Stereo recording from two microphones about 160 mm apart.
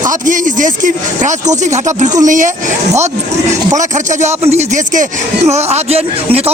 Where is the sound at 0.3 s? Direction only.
50° right (ahead or behind).